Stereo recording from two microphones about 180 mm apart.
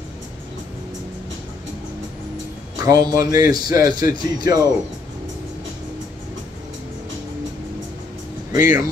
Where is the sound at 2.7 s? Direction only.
20° right (ahead or behind).